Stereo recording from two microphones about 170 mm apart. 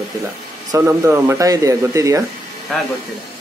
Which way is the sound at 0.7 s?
15° right (ahead or behind).